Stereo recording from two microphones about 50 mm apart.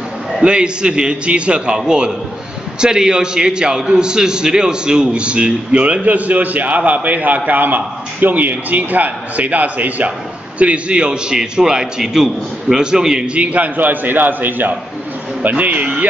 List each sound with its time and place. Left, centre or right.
0.4 s a man's voice: centre